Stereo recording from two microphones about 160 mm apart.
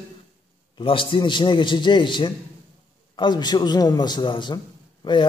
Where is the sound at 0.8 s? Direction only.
35° left (ahead or behind).